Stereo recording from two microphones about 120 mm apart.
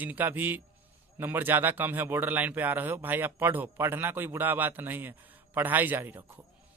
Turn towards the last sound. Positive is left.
turn(degrees=-15)  # may be behind; listen again after turning